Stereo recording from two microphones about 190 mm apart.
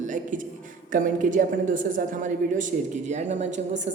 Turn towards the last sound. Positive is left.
turn(degrees=-40)  # may be behind; listen again after turning